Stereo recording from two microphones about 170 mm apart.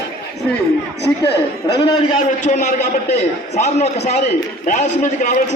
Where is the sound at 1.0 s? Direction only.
75° left (ahead or behind).